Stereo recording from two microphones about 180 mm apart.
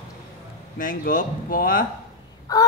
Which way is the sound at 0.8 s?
50° left (ahead or behind).